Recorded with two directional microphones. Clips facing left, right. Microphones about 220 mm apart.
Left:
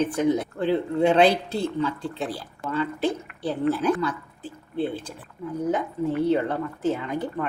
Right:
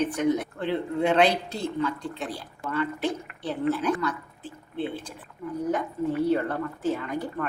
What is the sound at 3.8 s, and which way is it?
Speech, 30° left (ahead or behind).